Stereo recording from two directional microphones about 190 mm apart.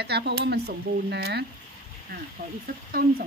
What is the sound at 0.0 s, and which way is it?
Speech, 60° right (ahead or behind).